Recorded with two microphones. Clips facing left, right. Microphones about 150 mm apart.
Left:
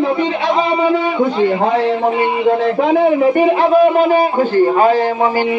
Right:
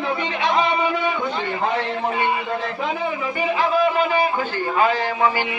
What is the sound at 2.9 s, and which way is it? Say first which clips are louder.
A man's voice: left 13 dB; 55° left (ahead or behind).